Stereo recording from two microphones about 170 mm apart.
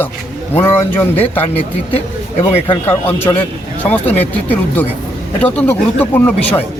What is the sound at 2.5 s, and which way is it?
Speech, 35° left (ahead or behind).